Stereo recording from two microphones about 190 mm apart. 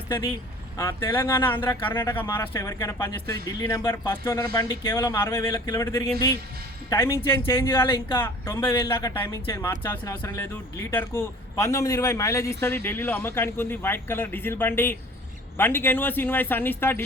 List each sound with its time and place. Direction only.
0.8 s speech: 15° left (ahead or behind)
7.4 s speech: 25° left (ahead or behind)
8.1 s speech: 10° left (ahead or behind)